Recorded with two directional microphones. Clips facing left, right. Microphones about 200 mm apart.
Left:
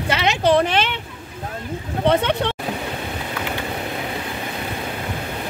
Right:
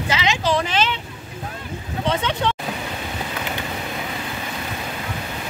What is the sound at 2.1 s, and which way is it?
Vehicle, 60° left (ahead or behind).